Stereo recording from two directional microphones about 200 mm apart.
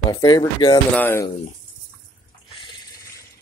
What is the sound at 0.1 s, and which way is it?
Speech, 20° left (ahead or behind).